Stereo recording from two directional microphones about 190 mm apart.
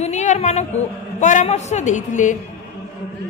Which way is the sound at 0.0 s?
35° left (ahead or behind).